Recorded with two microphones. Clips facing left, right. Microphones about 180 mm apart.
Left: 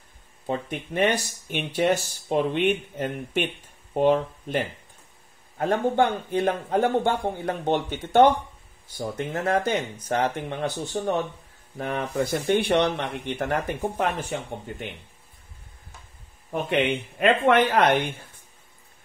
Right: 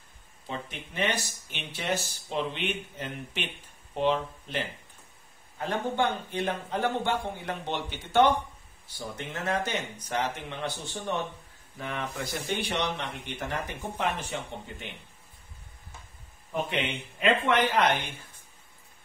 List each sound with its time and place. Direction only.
0.5 s speech: 50° left (ahead or behind)
5.6 s speech: 50° left (ahead or behind)
10.0 s speech: 50° left (ahead or behind)
16.5 s speech: 55° left (ahead or behind)